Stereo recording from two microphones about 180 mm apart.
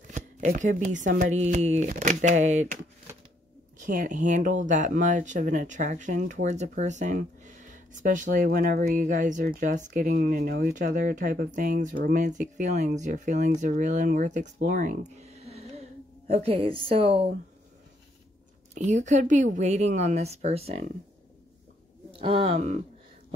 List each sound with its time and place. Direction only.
0.1 s chopping: 45° right (ahead or behind)
1.1 s a woman's voice: 45° right (ahead or behind)
3.9 s a woman's voice: 45° right (ahead or behind)
18.9 s a woman's voice: 45° right (ahead or behind)
22.1 s a woman's voice: 30° right (ahead or behind)